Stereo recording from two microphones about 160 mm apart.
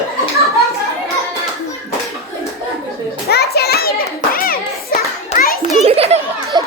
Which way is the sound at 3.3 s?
80° left.